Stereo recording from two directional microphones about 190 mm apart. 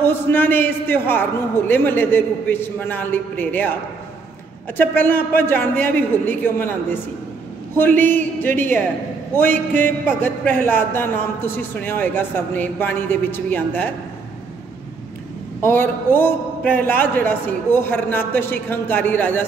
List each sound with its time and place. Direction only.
0.0 s a man's voice: 10° left (ahead or behind)
4.7 s a man's voice: 10° left (ahead or behind)
15.6 s a man's voice: 10° left (ahead or behind)